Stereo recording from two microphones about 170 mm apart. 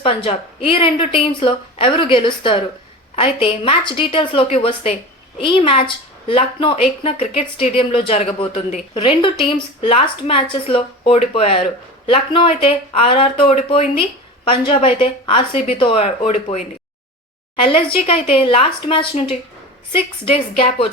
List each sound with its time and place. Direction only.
0.0 s a woman's voice: 30° left (ahead or behind)
17.6 s a woman's voice: 30° left (ahead or behind)
20.6 s a woman's voice: 35° left (ahead or behind)